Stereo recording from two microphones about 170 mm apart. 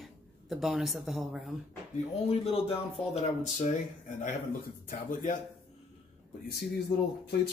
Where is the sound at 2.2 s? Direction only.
35° left (ahead or behind).